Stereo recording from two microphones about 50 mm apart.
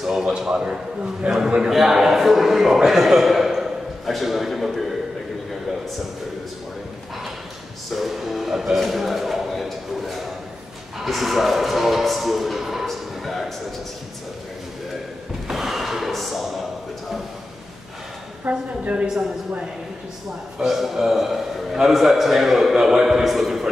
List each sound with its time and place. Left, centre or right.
0.0 s a man's voice: centre
7.9 s music: centre
11.0 s a man's voice: centre
12.8 s a sound: centre
15.4 s thump: centre
18.5 s a woman's voice: centre
19.0 s a man's voice: centre
20.5 s a man's voice: centre